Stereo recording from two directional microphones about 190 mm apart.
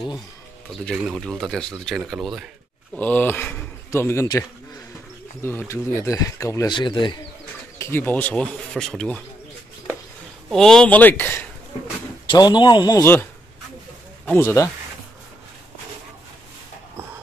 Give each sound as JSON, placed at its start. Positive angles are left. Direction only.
{"t": 0.8, "sound": "speech", "side_deg": 0}
{"t": 3.0, "sound": "speech", "side_deg": 10}
{"t": 7.8, "sound": "speech", "side_deg": 10}
{"t": 10.5, "sound": "speech", "side_deg": 0}
{"t": 12.3, "sound": "a man's voice", "side_deg": 25}